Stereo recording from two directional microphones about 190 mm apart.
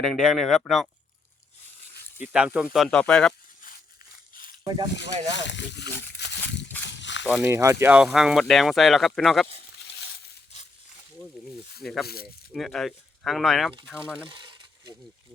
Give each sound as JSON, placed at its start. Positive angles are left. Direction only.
{"t": 0.0, "sound": "speech", "side_deg": 0}
{"t": 2.1, "sound": "speech", "side_deg": -5}
{"t": 4.6, "sound": "speech", "side_deg": -25}
{"t": 5.3, "sound": "a sound", "side_deg": 70}
{"t": 7.3, "sound": "speech", "side_deg": -10}
{"t": 9.8, "sound": "crushing", "side_deg": 60}
{"t": 11.8, "sound": "speech", "side_deg": 0}
{"t": 12.0, "sound": "speech", "side_deg": 55}
{"t": 12.5, "sound": "speech", "side_deg": 0}
{"t": 14.3, "sound": "a sound", "side_deg": -25}